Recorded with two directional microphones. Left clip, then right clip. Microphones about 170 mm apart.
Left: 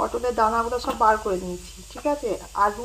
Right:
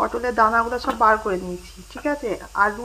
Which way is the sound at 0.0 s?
15° right (ahead or behind).